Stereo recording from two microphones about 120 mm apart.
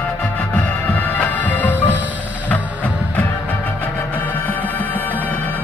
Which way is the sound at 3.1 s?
15° left (ahead or behind).